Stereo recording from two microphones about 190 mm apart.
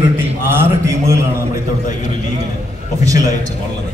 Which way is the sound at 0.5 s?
15° right (ahead or behind).